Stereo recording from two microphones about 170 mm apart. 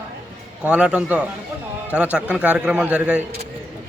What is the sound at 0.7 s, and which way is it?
A man's voice, 5° right (ahead or behind).